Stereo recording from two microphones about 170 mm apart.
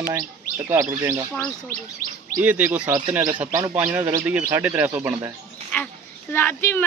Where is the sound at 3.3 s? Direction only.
25° right (ahead or behind).